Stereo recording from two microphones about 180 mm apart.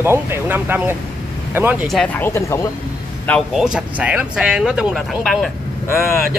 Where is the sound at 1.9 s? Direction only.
5° left (ahead or behind).